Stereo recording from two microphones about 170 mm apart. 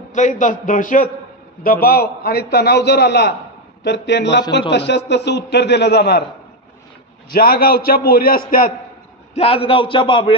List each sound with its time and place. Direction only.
0.1 s a man's voice: 45° left (ahead or behind)
1.6 s a man's voice: 60° left (ahead or behind)
3.8 s a man's voice: 90° left; by 6.2 s 70° left (ahead or behind)
7.2 s a man's voice: 60° left (ahead or behind)
9.3 s a man's voice: 35° left (ahead or behind)